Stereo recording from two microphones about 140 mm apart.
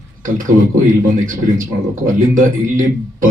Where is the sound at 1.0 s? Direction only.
75° right (ahead or behind).